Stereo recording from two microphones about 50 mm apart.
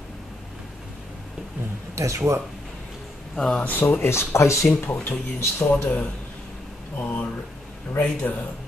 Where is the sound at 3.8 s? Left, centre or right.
Left.